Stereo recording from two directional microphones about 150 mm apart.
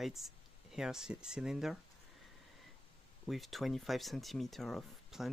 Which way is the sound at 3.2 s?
Centre (ahead or behind).